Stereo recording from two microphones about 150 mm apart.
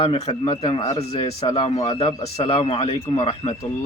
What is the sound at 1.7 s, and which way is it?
Speech, 45° left (ahead or behind).